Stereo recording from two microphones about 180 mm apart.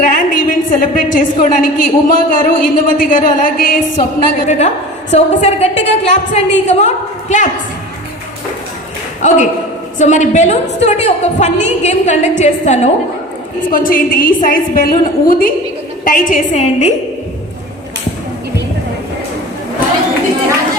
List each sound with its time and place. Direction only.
0.0 s a woman's voice: 45° left (ahead or behind)
9.2 s a woman's voice: 40° left (ahead or behind)
13.7 s a woman's voice: 50° left (ahead or behind)